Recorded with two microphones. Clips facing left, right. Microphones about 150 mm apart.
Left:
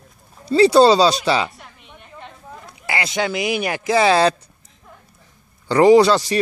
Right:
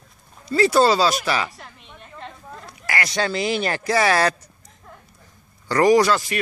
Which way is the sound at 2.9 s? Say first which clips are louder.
Left 2 dB; 20° left (ahead or behind).